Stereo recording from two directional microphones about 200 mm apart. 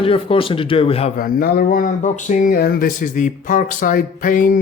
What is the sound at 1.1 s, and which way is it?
Speech, 45° left (ahead or behind).